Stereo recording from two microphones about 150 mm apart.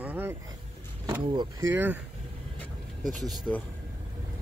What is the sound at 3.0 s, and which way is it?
Speech, 60° right (ahead or behind).